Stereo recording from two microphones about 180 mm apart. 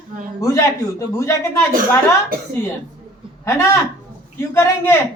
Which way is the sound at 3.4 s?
15° left (ahead or behind).